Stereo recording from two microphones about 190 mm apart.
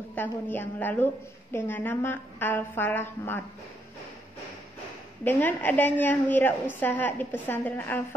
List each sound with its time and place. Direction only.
0.1 s a woman's voice: 10° left (ahead or behind)
5.2 s a woman's voice: 10° left (ahead or behind)